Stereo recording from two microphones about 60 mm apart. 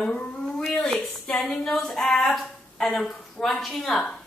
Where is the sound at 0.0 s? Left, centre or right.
Centre.